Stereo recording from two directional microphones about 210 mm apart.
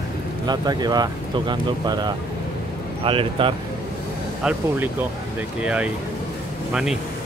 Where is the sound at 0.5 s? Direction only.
20° right (ahead or behind).